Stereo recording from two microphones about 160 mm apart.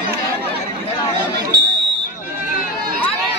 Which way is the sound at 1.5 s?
90° right.